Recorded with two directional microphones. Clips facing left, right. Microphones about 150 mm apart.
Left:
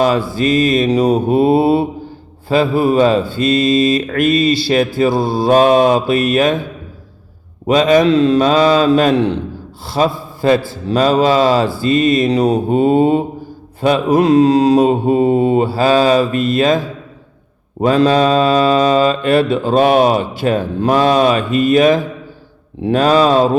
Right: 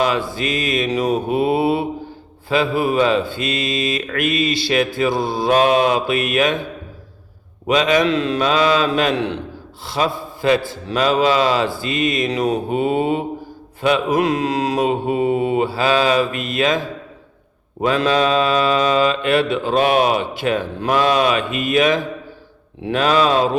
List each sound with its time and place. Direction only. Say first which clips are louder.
0.3 s mantra: left 8 dB; 35° left (ahead or behind)
7.7 s mantra: left 5 dB; 35° left (ahead or behind)
9.8 s a man's voice: left 5 dB; 35° left (ahead or behind)
10.8 s mantra: left 4 dB; 35° left (ahead or behind)